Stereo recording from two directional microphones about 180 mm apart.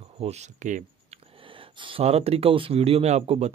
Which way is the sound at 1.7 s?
30° right (ahead or behind).